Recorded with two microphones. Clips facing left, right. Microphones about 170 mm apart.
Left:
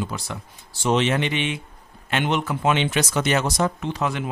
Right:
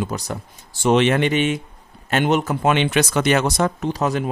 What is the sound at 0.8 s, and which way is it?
Speech, 60° right (ahead or behind).